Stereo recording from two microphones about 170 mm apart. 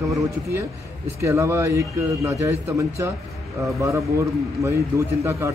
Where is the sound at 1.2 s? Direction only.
15° right (ahead or behind).